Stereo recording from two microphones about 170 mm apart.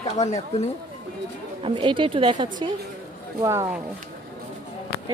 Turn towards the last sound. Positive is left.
turn(degrees=-20)  # may be behind; listen again after turning